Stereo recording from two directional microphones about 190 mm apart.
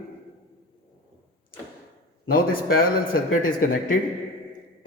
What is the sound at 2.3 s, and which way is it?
A man's voice, 50° left (ahead or behind).